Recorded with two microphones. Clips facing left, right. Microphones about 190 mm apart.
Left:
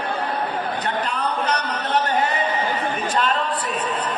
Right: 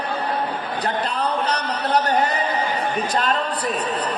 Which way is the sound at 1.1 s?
35° right (ahead or behind).